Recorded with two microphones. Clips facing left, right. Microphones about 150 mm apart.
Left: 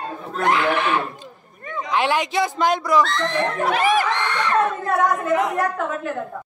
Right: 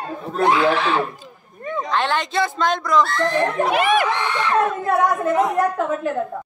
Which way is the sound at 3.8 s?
65° right (ahead or behind).